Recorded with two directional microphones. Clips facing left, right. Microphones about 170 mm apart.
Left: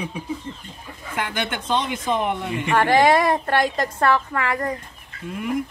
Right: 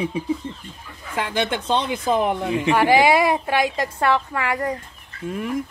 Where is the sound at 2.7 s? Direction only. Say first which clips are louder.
Even; 10° right (ahead or behind).